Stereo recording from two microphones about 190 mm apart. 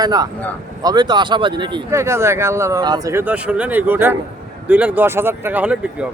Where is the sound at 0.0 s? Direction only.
20° right (ahead or behind).